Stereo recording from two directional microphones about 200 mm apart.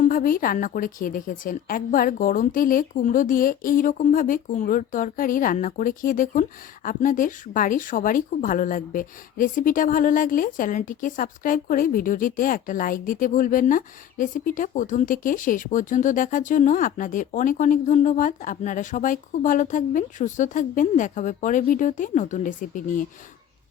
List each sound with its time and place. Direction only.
0.0 s a woman's voice: 45° left (ahead or behind)